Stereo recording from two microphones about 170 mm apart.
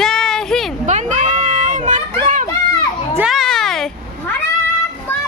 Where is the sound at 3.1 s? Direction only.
5° right (ahead or behind).